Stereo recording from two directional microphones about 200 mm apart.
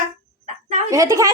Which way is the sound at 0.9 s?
15° right (ahead or behind).